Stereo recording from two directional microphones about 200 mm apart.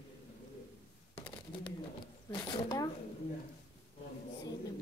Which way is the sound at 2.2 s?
20° left (ahead or behind).